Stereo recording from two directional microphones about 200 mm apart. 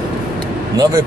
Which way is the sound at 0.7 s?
20° right (ahead or behind).